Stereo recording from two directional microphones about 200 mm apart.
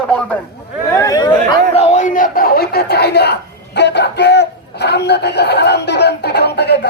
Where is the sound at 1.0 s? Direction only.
20° left (ahead or behind).